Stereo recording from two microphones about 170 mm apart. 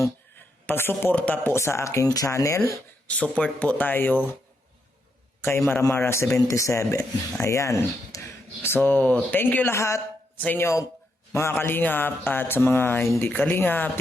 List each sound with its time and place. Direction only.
0.0 s speech: 10° left (ahead or behind)
5.6 s speech: 15° left (ahead or behind)